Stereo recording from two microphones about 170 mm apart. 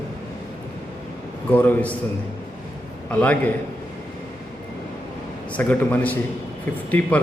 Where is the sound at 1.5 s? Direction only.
10° left (ahead or behind).